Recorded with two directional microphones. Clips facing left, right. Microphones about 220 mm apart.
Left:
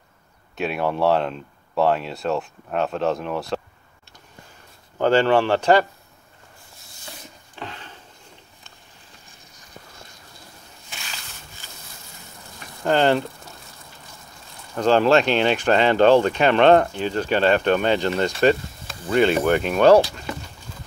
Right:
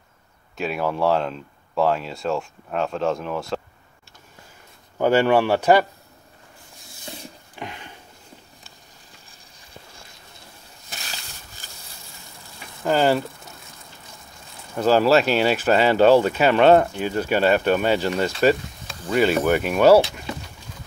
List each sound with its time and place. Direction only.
0.6 s speech: centre (ahead or behind)
4.9 s speech: 10° right (ahead or behind)
7.5 s a sound: 15° right (ahead or behind)
12.8 s speech: 5° right (ahead or behind)
14.8 s speech: 5° right (ahead or behind)